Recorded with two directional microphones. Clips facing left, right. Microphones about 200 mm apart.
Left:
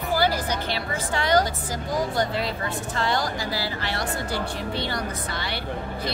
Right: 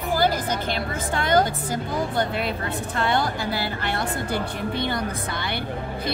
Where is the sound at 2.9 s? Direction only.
60° right (ahead or behind).